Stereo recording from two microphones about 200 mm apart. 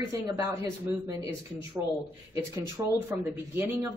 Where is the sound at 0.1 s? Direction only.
15° right (ahead or behind).